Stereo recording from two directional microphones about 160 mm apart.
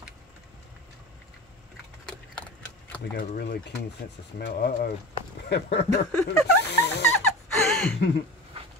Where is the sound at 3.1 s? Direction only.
80° left.